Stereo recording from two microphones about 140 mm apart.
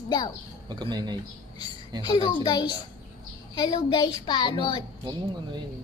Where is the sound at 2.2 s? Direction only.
30° left (ahead or behind).